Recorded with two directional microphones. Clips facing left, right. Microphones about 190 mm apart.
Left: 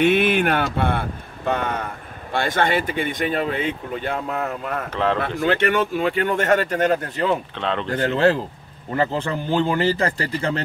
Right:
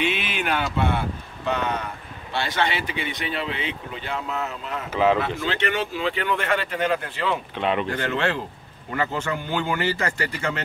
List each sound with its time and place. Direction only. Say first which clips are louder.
0.0 s speech: left 9 dB; 55° left (ahead or behind)
4.8 s a man's voice: right 3 dB; 5° right (ahead or behind)
5.4 s speech: left 6 dB; 50° left (ahead or behind)
7.5 s speech: right 1 dB; 10° right (ahead or behind)
7.9 s speech: left 6 dB; 35° left (ahead or behind)